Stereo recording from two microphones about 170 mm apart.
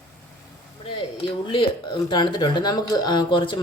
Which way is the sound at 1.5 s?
30° left (ahead or behind).